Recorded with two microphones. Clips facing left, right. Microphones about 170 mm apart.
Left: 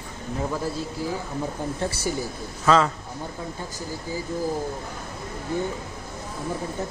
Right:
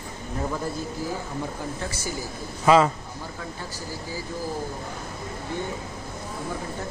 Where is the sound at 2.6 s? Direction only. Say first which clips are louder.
Right 2 dB; 10° right (ahead or behind).